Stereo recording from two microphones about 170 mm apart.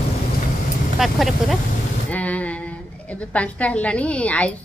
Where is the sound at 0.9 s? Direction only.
Centre (ahead or behind).